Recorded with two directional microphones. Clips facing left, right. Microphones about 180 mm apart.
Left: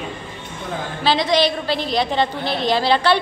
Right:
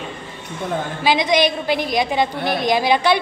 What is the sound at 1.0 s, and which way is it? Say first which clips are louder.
A woman's voice: even; 15° right (ahead or behind).